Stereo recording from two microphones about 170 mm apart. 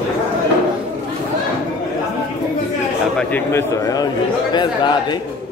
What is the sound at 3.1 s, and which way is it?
A man's voice, 10° left (ahead or behind).